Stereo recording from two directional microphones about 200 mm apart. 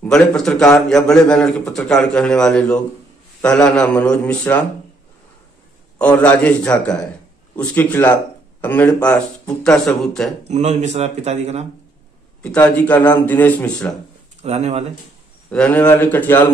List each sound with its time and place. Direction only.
0.0 s a man's voice: 5° left (ahead or behind)
5.9 s a man's voice: 5° left (ahead or behind)
10.5 s speech: 35° right (ahead or behind)
12.4 s a man's voice: 5° left (ahead or behind)
14.4 s speech: 30° right (ahead or behind)
15.5 s a man's voice: 5° left (ahead or behind)